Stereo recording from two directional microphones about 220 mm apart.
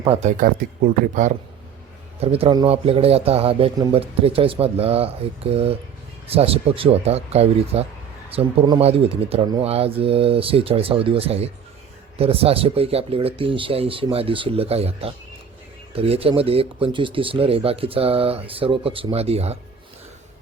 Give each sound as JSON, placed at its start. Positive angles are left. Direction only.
{"t": 0.0, "sound": "speech", "side_deg": -25}
{"t": 0.3, "sound": "speech", "side_deg": -40}
{"t": 2.2, "sound": "speech", "side_deg": -25}